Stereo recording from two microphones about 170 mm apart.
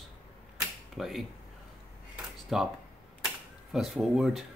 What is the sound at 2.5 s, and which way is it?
Speech, centre (ahead or behind).